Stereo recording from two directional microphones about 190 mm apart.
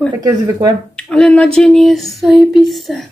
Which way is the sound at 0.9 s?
Centre (ahead or behind).